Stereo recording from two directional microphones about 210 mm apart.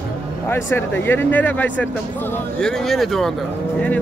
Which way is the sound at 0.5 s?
10° left (ahead or behind).